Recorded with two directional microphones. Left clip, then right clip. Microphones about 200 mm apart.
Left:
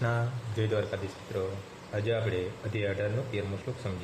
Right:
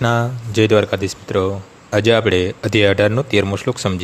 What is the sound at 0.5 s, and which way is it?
Speech, 55° right (ahead or behind).